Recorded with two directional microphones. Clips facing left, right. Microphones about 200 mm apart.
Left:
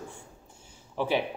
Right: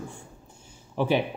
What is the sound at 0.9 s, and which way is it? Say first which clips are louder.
Speech: right 3 dB; 15° right (ahead or behind).